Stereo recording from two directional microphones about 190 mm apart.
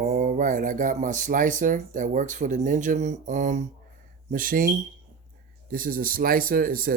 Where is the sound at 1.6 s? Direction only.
45° right (ahead or behind).